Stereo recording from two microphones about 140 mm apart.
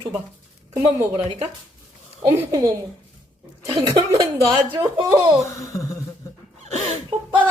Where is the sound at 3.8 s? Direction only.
25° right (ahead or behind).